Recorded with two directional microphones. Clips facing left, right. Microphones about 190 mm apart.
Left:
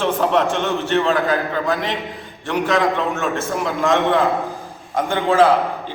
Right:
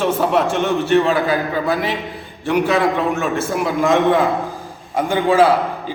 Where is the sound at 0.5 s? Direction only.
15° right (ahead or behind).